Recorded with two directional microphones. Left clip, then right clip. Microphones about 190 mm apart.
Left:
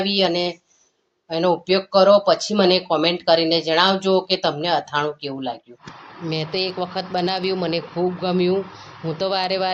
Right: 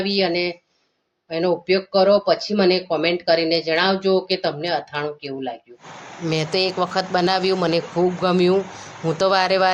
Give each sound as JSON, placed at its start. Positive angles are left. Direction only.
{"t": 0.0, "sound": "speech", "side_deg": 10}
{"t": 6.2, "sound": "a man's voice", "side_deg": -15}